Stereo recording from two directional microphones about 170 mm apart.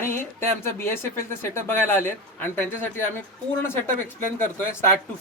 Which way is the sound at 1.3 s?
15° left (ahead or behind).